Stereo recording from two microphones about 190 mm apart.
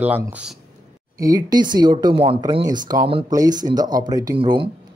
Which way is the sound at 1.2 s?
20° right (ahead or behind).